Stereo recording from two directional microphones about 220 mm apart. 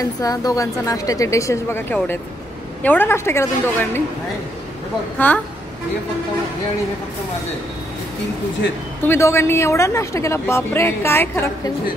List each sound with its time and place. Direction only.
0.2 s a woman's voice: 15° left (ahead or behind)
5.2 s a woman's voice: 10° left (ahead or behind)
9.0 s a woman's voice: 10° left (ahead or behind)